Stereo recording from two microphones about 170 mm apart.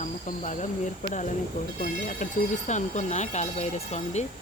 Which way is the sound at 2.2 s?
45° left (ahead or behind).